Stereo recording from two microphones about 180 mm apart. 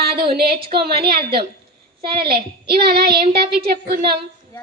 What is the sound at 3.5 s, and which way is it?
Speech, 60° right (ahead or behind).